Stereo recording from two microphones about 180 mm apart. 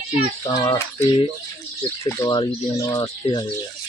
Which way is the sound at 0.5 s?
20° left (ahead or behind).